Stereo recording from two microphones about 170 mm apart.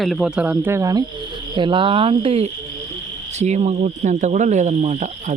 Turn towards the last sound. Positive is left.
turn(degrees=-40)  # may be behind; listen again after turning